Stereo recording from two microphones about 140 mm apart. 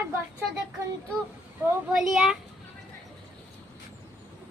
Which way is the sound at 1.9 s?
Centre (ahead or behind).